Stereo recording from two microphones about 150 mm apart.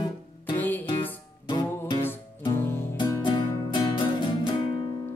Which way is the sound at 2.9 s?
25° left (ahead or behind).